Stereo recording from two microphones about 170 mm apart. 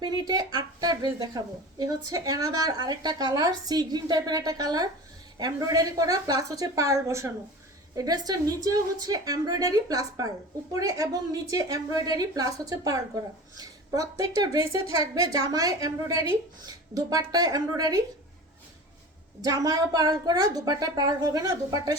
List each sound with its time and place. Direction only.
0.0 s a woman's voice: 25° right (ahead or behind)
19.4 s a woman's voice: 20° right (ahead or behind)